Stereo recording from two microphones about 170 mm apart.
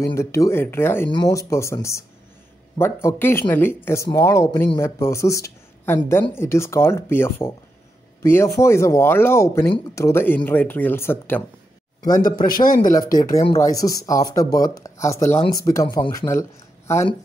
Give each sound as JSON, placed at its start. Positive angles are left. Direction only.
{"t": 0.0, "sound": "a man's voice", "side_deg": 15}
{"t": 12.3, "sound": "speech", "side_deg": 55}
{"t": 13.6, "sound": "speech", "side_deg": 20}